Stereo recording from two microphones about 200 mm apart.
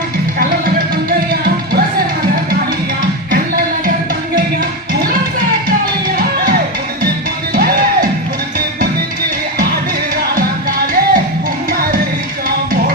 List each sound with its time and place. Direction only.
1.3 s music: 45° right (ahead or behind)
6.1 s music: 45° right (ahead or behind)
10.3 s music: 45° right (ahead or behind)